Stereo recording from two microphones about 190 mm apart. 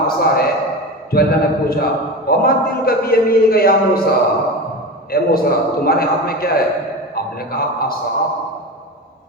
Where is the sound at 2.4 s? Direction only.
50° left (ahead or behind).